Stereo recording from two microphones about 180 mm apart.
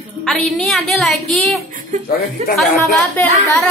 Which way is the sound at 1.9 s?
40° right (ahead or behind).